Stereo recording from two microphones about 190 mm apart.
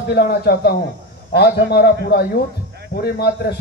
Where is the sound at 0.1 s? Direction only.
55° left (ahead or behind).